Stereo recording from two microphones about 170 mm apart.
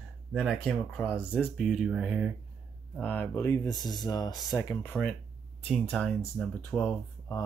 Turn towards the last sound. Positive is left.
turn(degrees=10)  # may be behind; listen again after turning